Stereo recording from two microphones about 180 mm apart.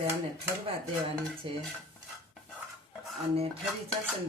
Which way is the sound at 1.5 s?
30° right (ahead or behind).